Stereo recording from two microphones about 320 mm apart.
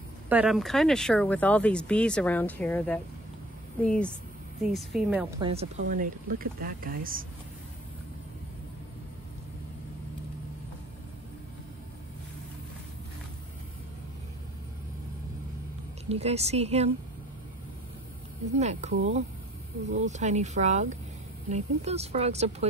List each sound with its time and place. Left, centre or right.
0.3 s speech: centre
5.4 s speech: centre
16.1 s speech: centre
18.6 s speech: right